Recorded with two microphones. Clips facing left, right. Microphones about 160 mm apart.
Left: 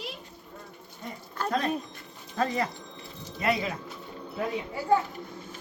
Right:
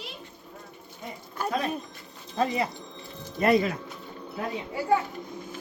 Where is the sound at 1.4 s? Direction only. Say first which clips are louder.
Left 1 dB; 10° right (ahead or behind).